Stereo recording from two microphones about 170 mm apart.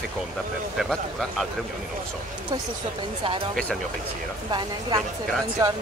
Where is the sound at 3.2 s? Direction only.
30° right (ahead or behind).